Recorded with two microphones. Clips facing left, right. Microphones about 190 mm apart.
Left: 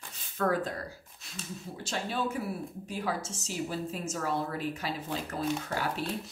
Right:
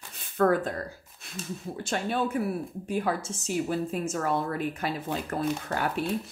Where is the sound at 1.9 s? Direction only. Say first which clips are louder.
Right 4 dB; 55° right (ahead or behind).